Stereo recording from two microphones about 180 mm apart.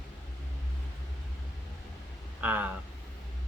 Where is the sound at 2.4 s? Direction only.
10° right (ahead or behind).